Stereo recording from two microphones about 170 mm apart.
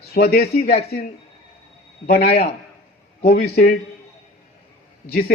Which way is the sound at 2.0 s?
70° left (ahead or behind).